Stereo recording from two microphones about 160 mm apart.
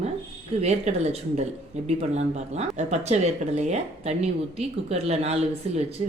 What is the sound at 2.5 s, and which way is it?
Speech, 45° right (ahead or behind).